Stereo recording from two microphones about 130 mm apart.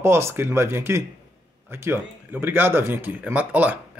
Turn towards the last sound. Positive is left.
turn(degrees=-10)  # may be behind; listen again after turning